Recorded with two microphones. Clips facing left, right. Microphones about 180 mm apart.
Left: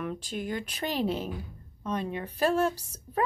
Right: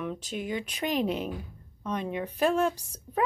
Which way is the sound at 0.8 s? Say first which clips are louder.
Right 1 dB; 35° left (ahead or behind).